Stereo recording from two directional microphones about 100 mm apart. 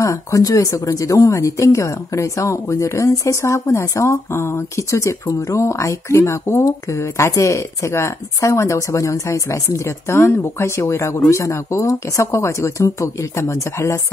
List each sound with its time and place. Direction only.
0.0 s speech: 35° left (ahead or behind)